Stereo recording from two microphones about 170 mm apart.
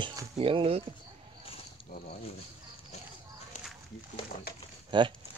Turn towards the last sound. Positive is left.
turn(degrees=-30)  # may be behind; listen again after turning